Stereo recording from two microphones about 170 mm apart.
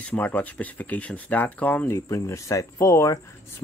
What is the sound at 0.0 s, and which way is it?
Speech, 10° left (ahead or behind).